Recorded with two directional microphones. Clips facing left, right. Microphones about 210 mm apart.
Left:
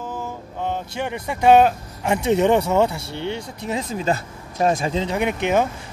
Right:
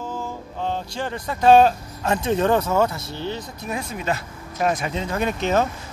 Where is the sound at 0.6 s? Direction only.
15° left (ahead or behind).